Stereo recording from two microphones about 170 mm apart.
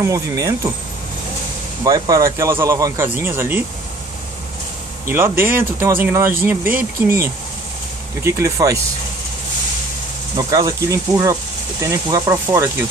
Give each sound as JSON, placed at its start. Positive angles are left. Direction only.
{"t": 0.0, "sound": "speech", "side_deg": -20}
{"t": 1.9, "sound": "speech", "side_deg": -20}
{"t": 5.0, "sound": "speech", "side_deg": -15}
{"t": 10.3, "sound": "speech", "side_deg": -20}